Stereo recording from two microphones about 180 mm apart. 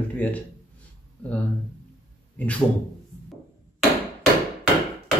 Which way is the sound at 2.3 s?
10° left (ahead or behind).